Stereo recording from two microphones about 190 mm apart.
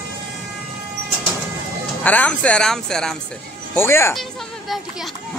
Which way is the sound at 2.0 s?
10° left (ahead or behind).